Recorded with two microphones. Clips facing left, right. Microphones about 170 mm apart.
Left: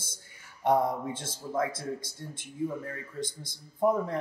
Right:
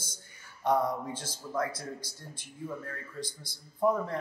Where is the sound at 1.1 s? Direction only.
25° left (ahead or behind).